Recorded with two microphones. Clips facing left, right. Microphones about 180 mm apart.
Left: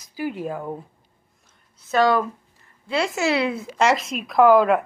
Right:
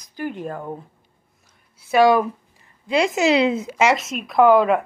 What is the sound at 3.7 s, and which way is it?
Speech, centre (ahead or behind).